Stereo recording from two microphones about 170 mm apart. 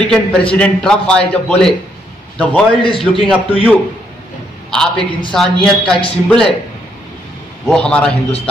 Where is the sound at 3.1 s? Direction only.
5° left (ahead or behind).